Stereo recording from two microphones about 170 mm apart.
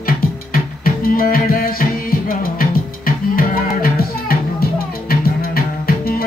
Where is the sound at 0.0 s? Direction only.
55° left (ahead or behind).